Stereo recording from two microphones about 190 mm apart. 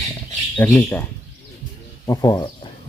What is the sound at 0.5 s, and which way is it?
Speech, 10° left (ahead or behind).